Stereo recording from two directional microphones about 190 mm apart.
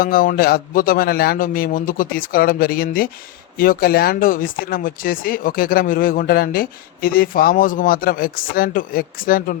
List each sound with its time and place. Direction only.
0.0 s speech: 50° left (ahead or behind)